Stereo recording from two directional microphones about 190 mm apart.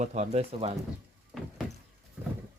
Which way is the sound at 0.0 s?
40° right (ahead or behind).